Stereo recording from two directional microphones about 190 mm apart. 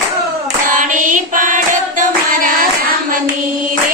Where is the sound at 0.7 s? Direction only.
45° right (ahead or behind).